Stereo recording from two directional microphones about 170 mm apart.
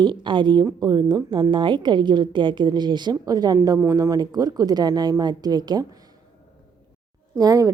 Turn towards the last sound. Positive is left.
turn(degrees=-20)  # may be behind; listen again after turning